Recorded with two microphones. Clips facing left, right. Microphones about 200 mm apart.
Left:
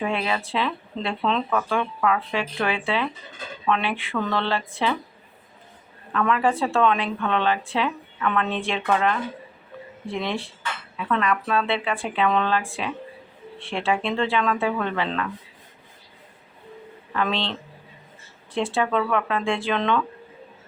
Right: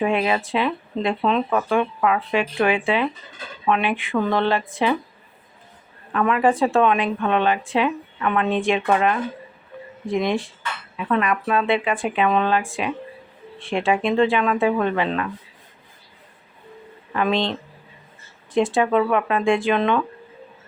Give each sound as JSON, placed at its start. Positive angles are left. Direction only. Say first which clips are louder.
{"t": 0.0, "sound": "speech", "louder": "right 5 dB", "side_deg": -15}
{"t": 6.1, "sound": "speech", "louder": "right 3 dB", "side_deg": -15}
{"t": 17.2, "sound": "speech", "louder": "right 4 dB", "side_deg": -15}